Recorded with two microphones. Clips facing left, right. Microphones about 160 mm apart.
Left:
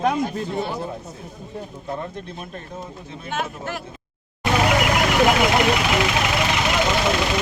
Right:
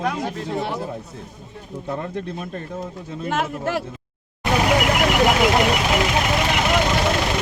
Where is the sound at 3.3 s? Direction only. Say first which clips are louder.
Right 4 dB; 85° right.